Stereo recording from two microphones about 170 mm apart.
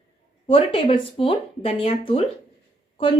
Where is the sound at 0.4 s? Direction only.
30° left (ahead or behind).